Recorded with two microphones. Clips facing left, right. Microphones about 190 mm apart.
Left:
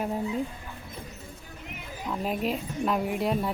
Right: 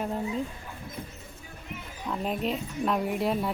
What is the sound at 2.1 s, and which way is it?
Speech, 5° left (ahead or behind).